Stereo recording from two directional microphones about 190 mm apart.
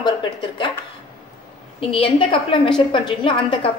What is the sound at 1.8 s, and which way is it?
A woman's voice, 30° left (ahead or behind).